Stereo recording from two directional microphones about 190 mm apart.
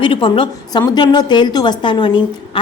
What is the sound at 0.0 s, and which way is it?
A woman's voice, 25° left (ahead or behind).